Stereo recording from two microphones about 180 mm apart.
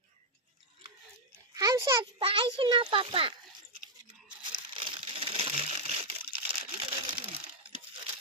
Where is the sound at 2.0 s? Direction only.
30° right (ahead or behind).